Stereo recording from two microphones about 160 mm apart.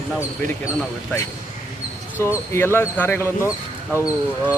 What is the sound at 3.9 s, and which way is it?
Speech, 10° right (ahead or behind).